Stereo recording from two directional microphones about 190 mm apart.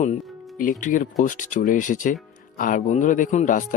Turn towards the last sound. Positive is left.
turn(degrees=40)  # may be behind; listen again after turning